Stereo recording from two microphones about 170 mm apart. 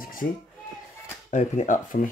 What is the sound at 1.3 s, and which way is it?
Speech, 50° left (ahead or behind).